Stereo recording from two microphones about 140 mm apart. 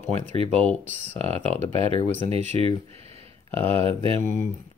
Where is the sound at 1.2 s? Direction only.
50° right (ahead or behind).